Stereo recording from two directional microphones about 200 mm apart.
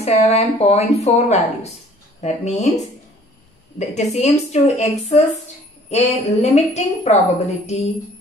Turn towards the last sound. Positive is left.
turn(degrees=35)  # may be behind; listen again after turning